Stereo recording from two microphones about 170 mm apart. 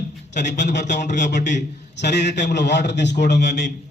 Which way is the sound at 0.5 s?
90° left.